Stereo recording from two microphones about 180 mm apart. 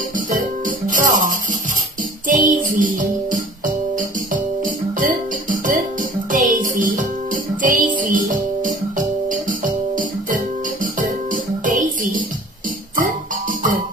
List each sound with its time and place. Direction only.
0.3 s music: 50° right (ahead or behind)